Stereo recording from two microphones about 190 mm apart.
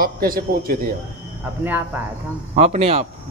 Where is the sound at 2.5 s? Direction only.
35° right (ahead or behind).